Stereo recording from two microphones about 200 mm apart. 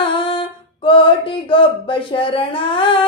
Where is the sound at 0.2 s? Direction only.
25° left (ahead or behind).